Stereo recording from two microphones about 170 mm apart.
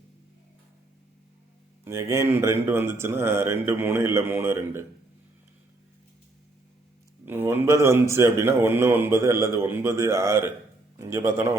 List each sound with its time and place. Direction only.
1.8 s a man's voice: 15° right (ahead or behind)
7.3 s a man's voice: 15° right (ahead or behind)